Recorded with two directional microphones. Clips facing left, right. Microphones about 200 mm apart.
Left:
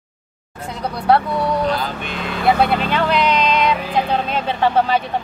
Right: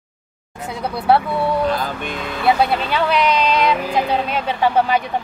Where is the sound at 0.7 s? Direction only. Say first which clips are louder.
Even; 5° right (ahead or behind).